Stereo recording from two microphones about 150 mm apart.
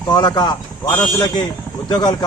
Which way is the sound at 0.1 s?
30° left (ahead or behind).